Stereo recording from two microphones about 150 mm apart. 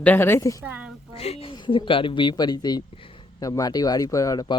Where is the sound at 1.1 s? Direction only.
40° left (ahead or behind).